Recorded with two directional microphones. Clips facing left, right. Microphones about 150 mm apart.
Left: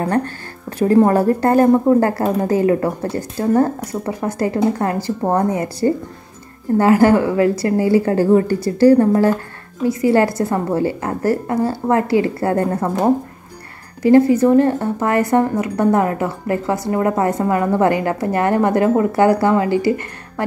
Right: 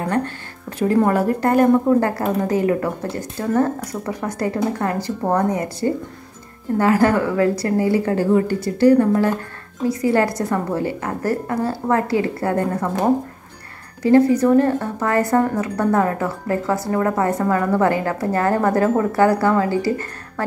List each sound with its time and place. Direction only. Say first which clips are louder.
0.7 s a woman's voice: left 4 dB; 35° left (ahead or behind)
14.1 s speech: left 2 dB; 25° left (ahead or behind)